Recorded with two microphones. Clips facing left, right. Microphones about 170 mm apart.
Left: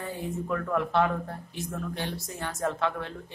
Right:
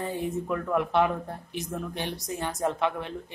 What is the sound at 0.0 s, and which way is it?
Speech, 20° right (ahead or behind).